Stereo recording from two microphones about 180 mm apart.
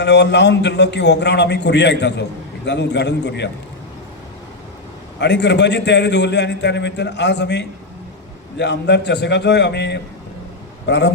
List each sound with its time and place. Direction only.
0.0 s a man's voice: 75° left (ahead or behind)
5.2 s a man's voice: 75° left (ahead or behind)